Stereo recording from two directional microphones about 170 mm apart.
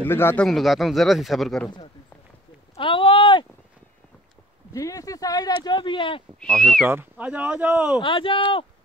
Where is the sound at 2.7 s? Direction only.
30° left (ahead or behind).